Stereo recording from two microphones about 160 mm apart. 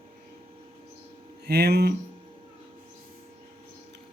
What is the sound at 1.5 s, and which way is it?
Speech, 90° right.